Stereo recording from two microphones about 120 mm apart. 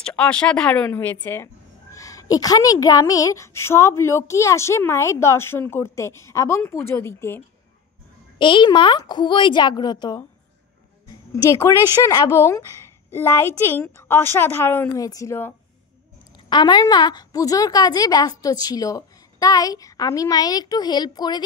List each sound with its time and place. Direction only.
0.0 s a woman's voice: 10° left (ahead or behind)
8.4 s a woman's voice: 40° left (ahead or behind)
11.5 s a woman's voice: 25° left (ahead or behind)
15.0 s a woman's voice: 30° left (ahead or behind)
16.4 s a woman's voice: 35° left (ahead or behind)